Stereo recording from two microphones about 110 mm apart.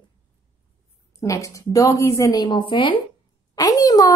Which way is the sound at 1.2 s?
30° left (ahead or behind).